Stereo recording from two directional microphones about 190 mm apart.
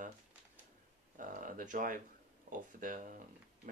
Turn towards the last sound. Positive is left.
turn(degrees=-45)  # may be behind; listen again after turning